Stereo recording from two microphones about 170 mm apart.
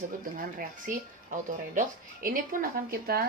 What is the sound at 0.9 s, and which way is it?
Speech, 50° right (ahead or behind).